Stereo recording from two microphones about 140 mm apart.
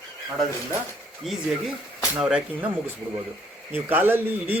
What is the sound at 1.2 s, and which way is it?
Speech, 5° right (ahead or behind).